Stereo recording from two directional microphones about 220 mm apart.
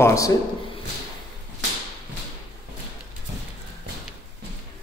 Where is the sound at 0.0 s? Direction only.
15° left (ahead or behind).